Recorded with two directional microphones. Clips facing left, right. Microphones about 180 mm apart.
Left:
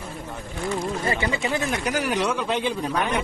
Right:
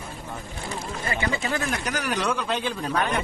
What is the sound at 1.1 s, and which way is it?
A man's voice, 20° left (ahead or behind).